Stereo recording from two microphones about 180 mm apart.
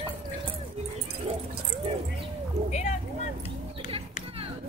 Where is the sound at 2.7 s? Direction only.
40° left (ahead or behind).